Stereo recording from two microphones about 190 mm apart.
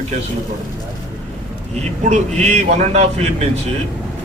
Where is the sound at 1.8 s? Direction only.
35° right (ahead or behind).